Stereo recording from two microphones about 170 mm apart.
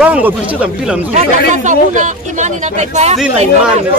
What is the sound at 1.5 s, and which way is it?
Speech, 45° right (ahead or behind).